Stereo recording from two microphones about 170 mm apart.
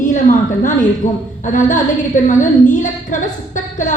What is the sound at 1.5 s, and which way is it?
A woman's voice, 50° left (ahead or behind).